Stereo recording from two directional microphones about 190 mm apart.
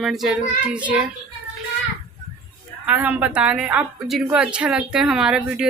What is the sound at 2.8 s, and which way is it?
A woman's voice, 10° right (ahead or behind).